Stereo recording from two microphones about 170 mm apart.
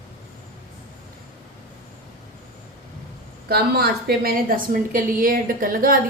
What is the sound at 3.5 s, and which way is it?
A woman's voice, 65° right (ahead or behind).